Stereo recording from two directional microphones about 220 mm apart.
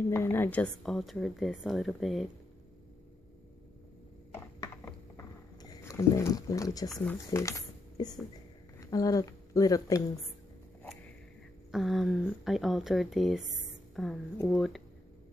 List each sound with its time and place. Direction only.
0.1 s a woman's voice: 10° left (ahead or behind)
5.1 s a sound: 15° left (ahead or behind)
7.2 s speech: 15° left (ahead or behind)
11.7 s a woman's voice: centre (ahead or behind)